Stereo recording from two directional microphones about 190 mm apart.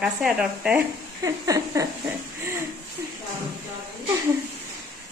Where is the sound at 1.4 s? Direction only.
20° right (ahead or behind).